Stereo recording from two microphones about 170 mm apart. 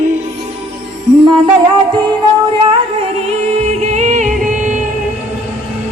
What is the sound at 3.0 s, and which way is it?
Music, 40° right (ahead or behind).